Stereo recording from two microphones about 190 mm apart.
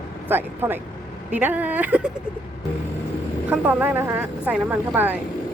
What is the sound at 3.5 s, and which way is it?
Speech, 10° right (ahead or behind).